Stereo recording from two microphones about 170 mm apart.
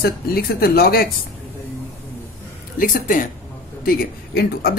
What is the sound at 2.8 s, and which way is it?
Speech, 55° left (ahead or behind).